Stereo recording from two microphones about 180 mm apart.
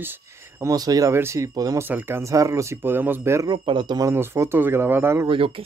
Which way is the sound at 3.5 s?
25° right (ahead or behind).